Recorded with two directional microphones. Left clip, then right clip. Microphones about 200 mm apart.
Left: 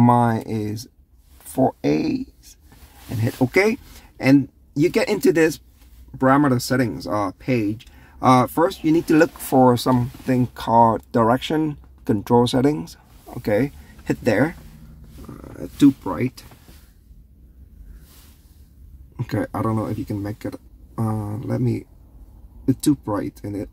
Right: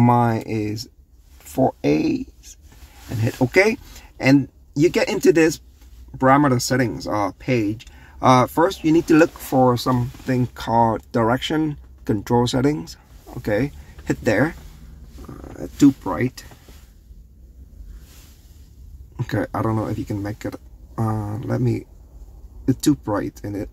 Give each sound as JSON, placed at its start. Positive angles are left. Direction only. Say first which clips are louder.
{"t": 0.0, "sound": "speech", "louder": "left 1 dB", "side_deg": 10}
{"t": 9.4, "sound": "speech", "louder": "left 2 dB", "side_deg": 30}
{"t": 10.2, "sound": "speech", "louder": "left 2 dB", "side_deg": 15}
{"t": 19.1, "sound": "speech", "louder": "right 1 dB", "side_deg": 5}